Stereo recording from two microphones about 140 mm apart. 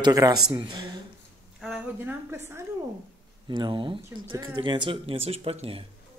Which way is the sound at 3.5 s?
35° right (ahead or behind).